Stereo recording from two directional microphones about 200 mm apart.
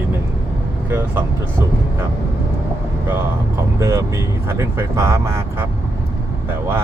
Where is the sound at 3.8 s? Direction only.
15° right (ahead or behind).